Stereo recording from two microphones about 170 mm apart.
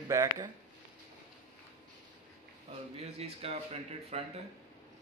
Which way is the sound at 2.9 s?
35° right (ahead or behind).